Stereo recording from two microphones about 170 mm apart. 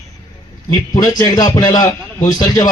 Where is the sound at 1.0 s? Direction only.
20° left (ahead or behind).